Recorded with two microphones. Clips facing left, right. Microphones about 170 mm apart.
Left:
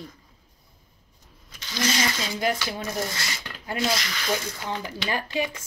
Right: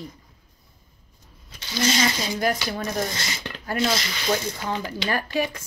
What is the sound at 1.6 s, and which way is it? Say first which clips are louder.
Speech: right 3 dB; 30° right (ahead or behind).